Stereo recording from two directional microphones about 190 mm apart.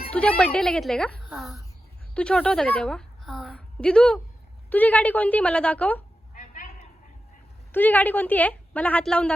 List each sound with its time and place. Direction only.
0.1 s a woman's voice: 5° left (ahead or behind)
6.3 s a sound: 45° left (ahead or behind)
7.7 s a woman's voice: 10° left (ahead or behind)